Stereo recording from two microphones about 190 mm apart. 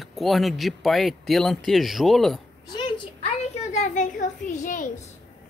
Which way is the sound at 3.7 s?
40° left (ahead or behind).